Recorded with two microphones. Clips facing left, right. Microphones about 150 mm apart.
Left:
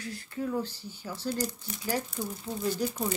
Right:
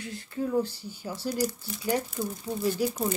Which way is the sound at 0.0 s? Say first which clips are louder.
Right 2 dB; 25° right (ahead or behind).